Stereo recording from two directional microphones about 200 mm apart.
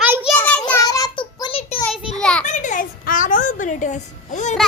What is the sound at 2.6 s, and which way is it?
A child's voice, 40° left (ahead or behind).